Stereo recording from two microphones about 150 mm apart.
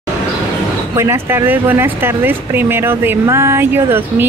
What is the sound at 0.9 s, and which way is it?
Speech, 20° right (ahead or behind).